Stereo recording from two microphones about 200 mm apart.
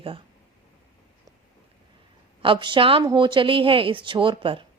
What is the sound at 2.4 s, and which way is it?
A woman's voice, 25° right (ahead or behind).